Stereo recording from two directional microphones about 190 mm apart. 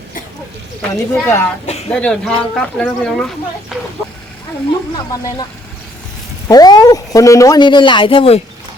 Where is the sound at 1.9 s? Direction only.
5° left (ahead or behind).